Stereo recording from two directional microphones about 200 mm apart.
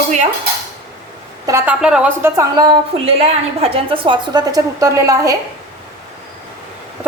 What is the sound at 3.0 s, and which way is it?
A woman's voice, 30° right (ahead or behind).